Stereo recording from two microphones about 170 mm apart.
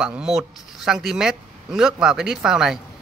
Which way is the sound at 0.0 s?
5° right (ahead or behind).